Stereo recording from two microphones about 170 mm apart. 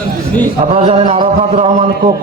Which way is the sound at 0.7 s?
35° right (ahead or behind).